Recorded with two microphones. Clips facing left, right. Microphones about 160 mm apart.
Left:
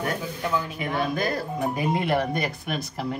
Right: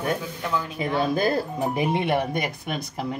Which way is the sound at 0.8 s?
30° right (ahead or behind).